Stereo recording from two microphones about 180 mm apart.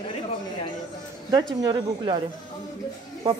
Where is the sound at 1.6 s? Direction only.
25° right (ahead or behind).